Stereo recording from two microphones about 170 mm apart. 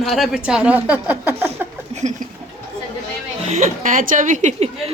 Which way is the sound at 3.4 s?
45° right (ahead or behind).